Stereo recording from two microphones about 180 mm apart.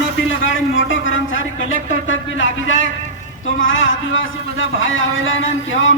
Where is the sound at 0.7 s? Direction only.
90° left.